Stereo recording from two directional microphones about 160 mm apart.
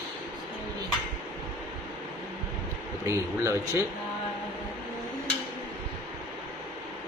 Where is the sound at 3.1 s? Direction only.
20° right (ahead or behind).